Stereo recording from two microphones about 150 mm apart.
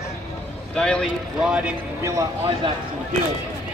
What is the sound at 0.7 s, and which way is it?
Speech, 5° left (ahead or behind).